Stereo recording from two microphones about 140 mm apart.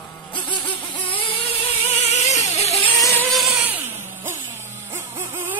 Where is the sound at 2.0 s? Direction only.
50° left (ahead or behind).